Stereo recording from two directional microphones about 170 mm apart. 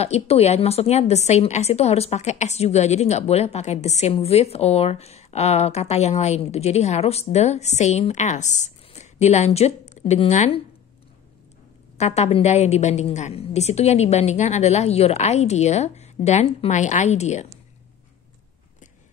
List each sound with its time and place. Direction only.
0.0 s a woman's voice: 40° left (ahead or behind)
12.0 s a woman's voice: 40° left (ahead or behind)